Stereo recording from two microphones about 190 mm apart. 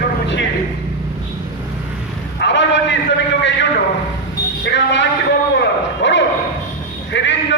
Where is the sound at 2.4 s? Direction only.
65° left (ahead or behind).